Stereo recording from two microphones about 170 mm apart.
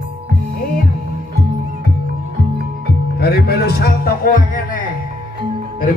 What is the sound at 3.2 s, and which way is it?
Music, 70° left (ahead or behind).